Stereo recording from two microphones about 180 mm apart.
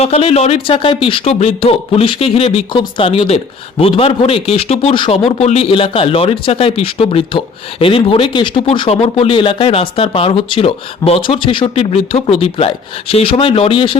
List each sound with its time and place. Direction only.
0.0 s speech: 35° left (ahead or behind)